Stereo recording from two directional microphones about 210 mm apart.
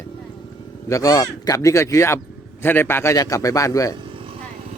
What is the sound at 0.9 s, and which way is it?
Speech, 15° left (ahead or behind).